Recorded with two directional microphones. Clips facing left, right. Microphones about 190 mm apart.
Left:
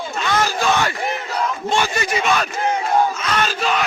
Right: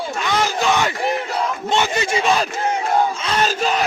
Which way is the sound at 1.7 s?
20° right (ahead or behind).